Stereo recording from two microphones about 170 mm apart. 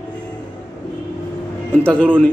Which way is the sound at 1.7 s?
10° left (ahead or behind).